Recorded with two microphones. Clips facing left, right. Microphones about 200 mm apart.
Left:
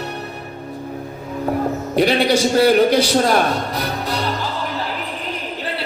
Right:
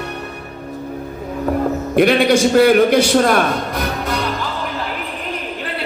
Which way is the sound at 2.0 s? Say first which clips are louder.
Right 3 dB; 55° right (ahead or behind).